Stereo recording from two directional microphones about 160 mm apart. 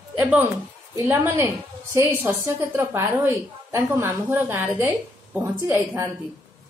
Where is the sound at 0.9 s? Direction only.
10° right (ahead or behind).